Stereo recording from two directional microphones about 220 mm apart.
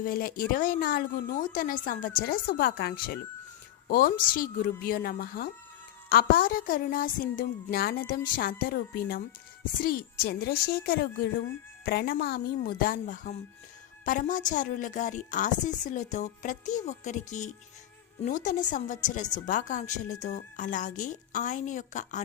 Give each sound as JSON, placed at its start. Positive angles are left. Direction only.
{"t": 0.0, "sound": "a woman's voice", "side_deg": 40}